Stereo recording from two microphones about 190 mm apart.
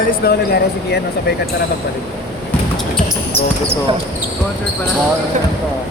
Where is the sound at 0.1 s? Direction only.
55° left (ahead or behind).